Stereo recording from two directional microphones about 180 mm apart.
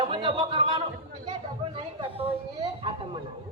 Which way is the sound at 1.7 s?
30° right (ahead or behind).